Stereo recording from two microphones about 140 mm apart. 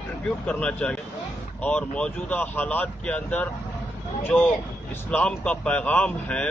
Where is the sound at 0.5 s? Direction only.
10° left (ahead or behind).